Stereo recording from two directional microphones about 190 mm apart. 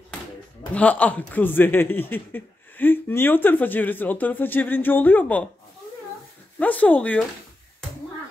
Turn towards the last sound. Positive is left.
turn(degrees=10)  # may be behind; listen again after turning